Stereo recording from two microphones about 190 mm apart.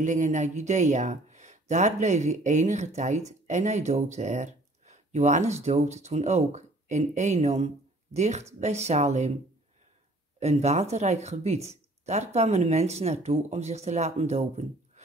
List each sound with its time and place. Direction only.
0.0 s speech: 40° right (ahead or behind)
10.4 s speech: 35° right (ahead or behind)